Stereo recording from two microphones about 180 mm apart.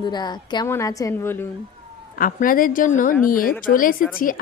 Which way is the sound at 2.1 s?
50° left (ahead or behind).